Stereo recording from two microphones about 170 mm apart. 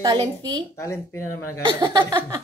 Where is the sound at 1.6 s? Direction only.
25° right (ahead or behind).